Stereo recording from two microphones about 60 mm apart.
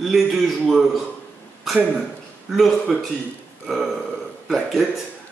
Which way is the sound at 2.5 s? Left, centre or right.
Centre.